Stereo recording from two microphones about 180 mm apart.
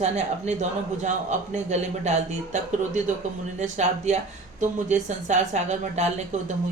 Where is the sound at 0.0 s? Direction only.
40° right (ahead or behind).